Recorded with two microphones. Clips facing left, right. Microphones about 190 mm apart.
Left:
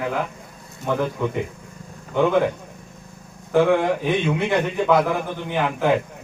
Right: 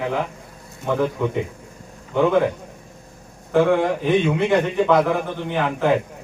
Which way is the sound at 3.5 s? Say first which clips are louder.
Even; centre (ahead or behind).